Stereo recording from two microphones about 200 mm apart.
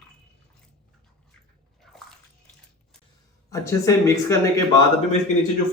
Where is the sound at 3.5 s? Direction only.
15° left (ahead or behind).